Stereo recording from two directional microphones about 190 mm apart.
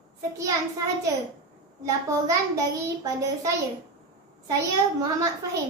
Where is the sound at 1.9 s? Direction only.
15° right (ahead or behind).